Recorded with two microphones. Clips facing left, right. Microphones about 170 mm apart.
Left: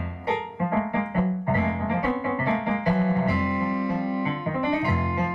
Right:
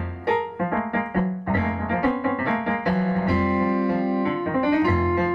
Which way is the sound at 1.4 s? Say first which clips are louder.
Even; 70° right (ahead or behind).